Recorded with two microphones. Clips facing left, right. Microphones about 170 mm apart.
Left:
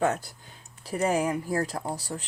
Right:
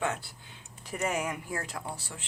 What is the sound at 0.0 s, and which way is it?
Speech, 40° left (ahead or behind).